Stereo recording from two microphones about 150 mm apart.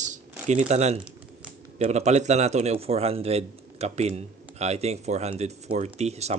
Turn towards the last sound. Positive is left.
turn(degrees=-45)  # may be behind; listen again after turning